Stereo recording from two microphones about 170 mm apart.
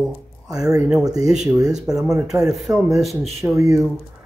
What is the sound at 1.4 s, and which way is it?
Speech, 20° right (ahead or behind).